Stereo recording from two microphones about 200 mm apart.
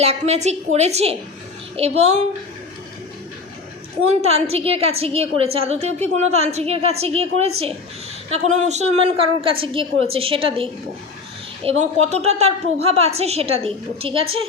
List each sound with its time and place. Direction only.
0.0 s a woman's voice: 30° right (ahead or behind)
4.2 s a woman's voice: 30° right (ahead or behind)
9.0 s a woman's voice: 25° right (ahead or behind)